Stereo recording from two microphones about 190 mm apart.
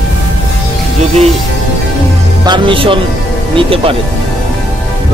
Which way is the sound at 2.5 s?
25° right (ahead or behind).